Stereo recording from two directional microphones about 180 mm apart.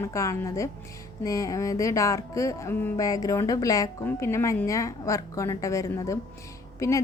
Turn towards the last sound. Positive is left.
turn(degrees=15)  # may be behind; listen again after turning